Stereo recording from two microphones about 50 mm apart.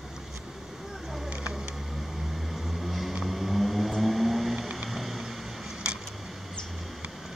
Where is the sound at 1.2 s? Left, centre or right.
Right.